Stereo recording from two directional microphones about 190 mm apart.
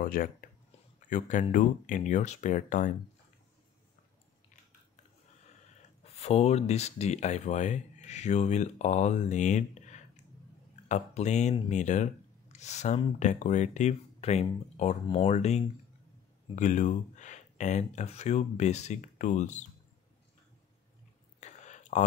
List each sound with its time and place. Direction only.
0.0 s speech: 50° left (ahead or behind)
6.1 s speech: 35° left (ahead or behind)
21.4 s a sound: 40° left (ahead or behind)